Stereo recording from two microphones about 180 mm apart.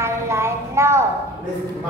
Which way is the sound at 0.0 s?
15° right (ahead or behind).